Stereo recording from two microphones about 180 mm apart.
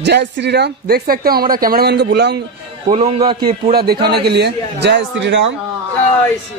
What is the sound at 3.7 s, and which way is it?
Speech, 60° right (ahead or behind).